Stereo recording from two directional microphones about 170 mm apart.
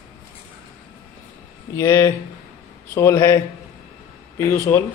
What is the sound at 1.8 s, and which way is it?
Speech, 15° left (ahead or behind).